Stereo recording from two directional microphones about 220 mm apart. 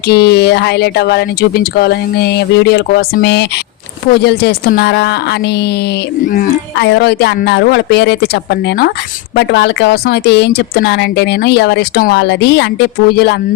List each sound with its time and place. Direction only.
0.1 s speech: 50° left (ahead or behind)